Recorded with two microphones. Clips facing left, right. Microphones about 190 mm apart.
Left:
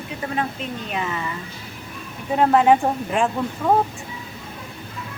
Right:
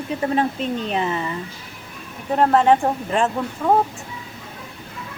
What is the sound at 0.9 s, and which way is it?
Speech, 30° right (ahead or behind).